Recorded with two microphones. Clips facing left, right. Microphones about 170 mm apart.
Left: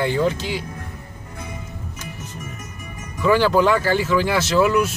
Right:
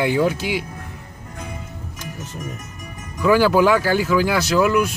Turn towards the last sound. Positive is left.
turn(degrees=0)  # may be behind; listen again after turning